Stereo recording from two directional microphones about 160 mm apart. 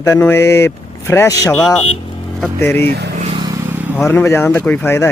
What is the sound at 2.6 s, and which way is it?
Speech, 15° left (ahead or behind).